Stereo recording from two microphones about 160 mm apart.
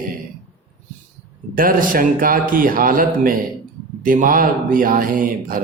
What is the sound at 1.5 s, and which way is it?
Speech, 60° right (ahead or behind).